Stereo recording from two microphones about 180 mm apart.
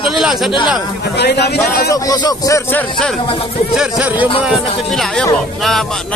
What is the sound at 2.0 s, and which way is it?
Speech, 20° left (ahead or behind).